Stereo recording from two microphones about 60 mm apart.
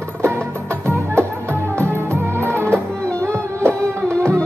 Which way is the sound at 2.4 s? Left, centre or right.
Right.